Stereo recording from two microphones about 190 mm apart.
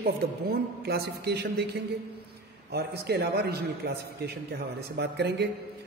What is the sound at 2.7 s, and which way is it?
A man's voice, 60° right (ahead or behind).